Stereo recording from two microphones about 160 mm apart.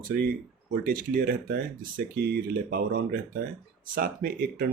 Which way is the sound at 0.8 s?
65° right (ahead or behind).